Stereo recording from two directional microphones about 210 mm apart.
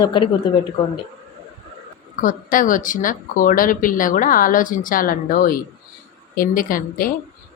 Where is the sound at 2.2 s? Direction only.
40° left (ahead or behind).